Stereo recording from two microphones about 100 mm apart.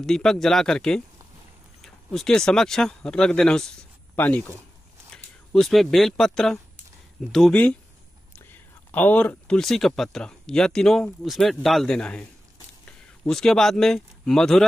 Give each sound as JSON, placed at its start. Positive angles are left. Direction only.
{"t": 0.0, "sound": "speech", "side_deg": 5}
{"t": 4.1, "sound": "speech", "side_deg": 20}
{"t": 5.1, "sound": "speech", "side_deg": 5}
{"t": 8.5, "sound": "whispering", "side_deg": 20}
{"t": 9.6, "sound": "speech", "side_deg": 5}
{"t": 13.3, "sound": "speech", "side_deg": 5}